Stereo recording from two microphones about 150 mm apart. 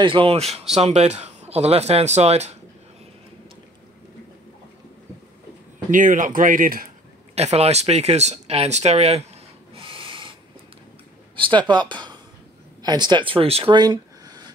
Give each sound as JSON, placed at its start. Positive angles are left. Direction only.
{"t": 0.0, "sound": "speech", "side_deg": -35}
{"t": 5.9, "sound": "speech", "side_deg": -60}
{"t": 7.3, "sound": "speech", "side_deg": -45}
{"t": 9.8, "sound": "a sound", "side_deg": -35}
{"t": 11.3, "sound": "speech", "side_deg": -35}
{"t": 13.7, "sound": "a sound", "side_deg": -25}